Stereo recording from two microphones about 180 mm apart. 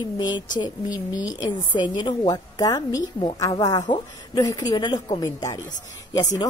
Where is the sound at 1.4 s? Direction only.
25° left (ahead or behind).